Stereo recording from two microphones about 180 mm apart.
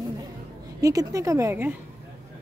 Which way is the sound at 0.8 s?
20° right (ahead or behind).